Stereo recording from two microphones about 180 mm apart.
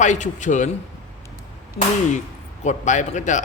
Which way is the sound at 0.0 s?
45° left (ahead or behind).